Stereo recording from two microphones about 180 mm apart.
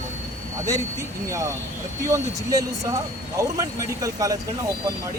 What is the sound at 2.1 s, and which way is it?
Speech, 20° right (ahead or behind).